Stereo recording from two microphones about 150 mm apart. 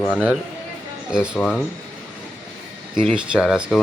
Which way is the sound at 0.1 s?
10° right (ahead or behind).